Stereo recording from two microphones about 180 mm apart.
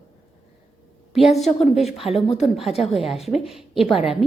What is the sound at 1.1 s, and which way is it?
A woman's voice, centre (ahead or behind).